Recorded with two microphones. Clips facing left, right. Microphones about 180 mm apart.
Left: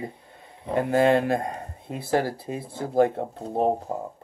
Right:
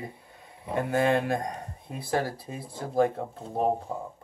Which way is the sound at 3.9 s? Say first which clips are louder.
Left 4 dB; 20° left (ahead or behind).